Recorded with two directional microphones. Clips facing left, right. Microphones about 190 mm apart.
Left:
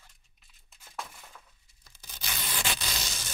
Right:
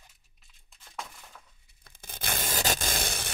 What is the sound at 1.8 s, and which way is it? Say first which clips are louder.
Tearing: right 6 dB; 50° right (ahead or behind).